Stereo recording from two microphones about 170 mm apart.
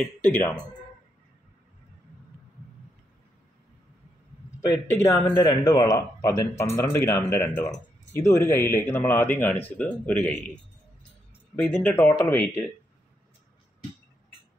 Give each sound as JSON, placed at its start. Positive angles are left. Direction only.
{"t": 0.0, "sound": "speech", "side_deg": 5}
{"t": 4.9, "sound": "speech", "side_deg": 15}